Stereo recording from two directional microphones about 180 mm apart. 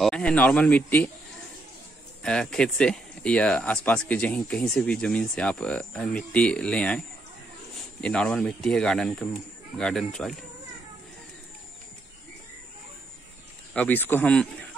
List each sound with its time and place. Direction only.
0.0 s speech: 5° left (ahead or behind)
2.2 s speech: 5° left (ahead or behind)
13.7 s speech: 10° left (ahead or behind)